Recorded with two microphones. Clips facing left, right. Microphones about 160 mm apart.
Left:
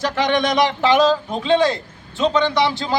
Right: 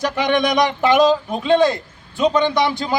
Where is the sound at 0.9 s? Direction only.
15° right (ahead or behind).